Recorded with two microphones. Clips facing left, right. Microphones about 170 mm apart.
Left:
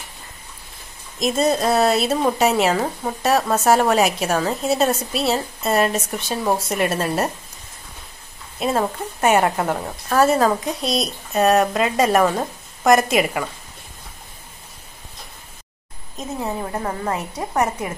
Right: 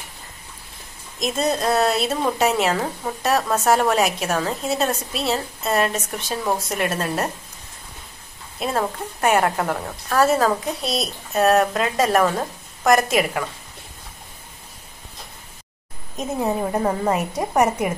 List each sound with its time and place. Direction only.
1.2 s a woman's voice: centre (ahead or behind)
8.5 s a woman's voice: 5° left (ahead or behind)
16.2 s a woman's voice: 15° right (ahead or behind)